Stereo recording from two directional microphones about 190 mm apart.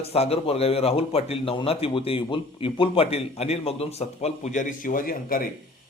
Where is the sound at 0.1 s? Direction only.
30° left (ahead or behind).